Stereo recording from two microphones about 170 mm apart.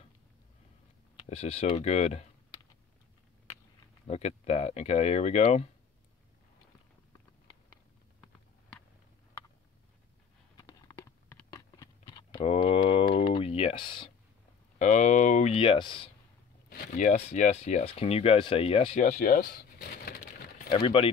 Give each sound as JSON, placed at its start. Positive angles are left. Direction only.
{"t": 1.1, "sound": "speech", "side_deg": 35}
{"t": 4.1, "sound": "speech", "side_deg": 40}
{"t": 10.6, "sound": "a sound", "side_deg": 20}
{"t": 12.4, "sound": "a sound", "side_deg": 35}
{"t": 14.8, "sound": "speech", "side_deg": 45}
{"t": 16.6, "sound": "speech", "side_deg": 55}
{"t": 19.0, "sound": "speech", "side_deg": 55}
{"t": 20.1, "sound": "a sound", "side_deg": 55}
{"t": 20.7, "sound": "speech", "side_deg": 35}